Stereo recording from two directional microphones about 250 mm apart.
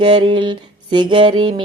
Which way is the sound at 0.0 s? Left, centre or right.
Centre.